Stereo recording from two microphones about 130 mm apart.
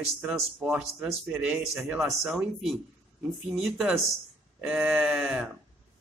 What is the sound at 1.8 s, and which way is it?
Speech, 15° right (ahead or behind).